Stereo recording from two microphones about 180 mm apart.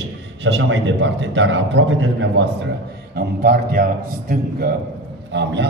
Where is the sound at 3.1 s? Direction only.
55° right (ahead or behind).